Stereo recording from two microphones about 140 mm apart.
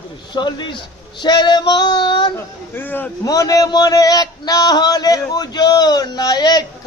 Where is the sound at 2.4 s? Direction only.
15° left (ahead or behind).